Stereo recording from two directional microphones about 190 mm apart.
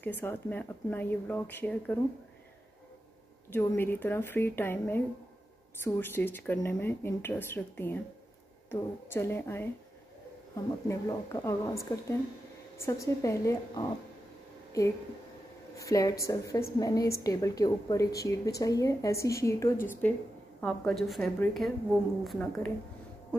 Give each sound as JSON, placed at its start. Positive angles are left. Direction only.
{"t": 0.0, "sound": "speech", "side_deg": 10}
{"t": 3.4, "sound": "speech", "side_deg": 10}
{"t": 15.8, "sound": "a woman's voice", "side_deg": 15}